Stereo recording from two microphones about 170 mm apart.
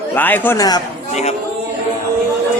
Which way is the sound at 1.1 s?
40° left (ahead or behind).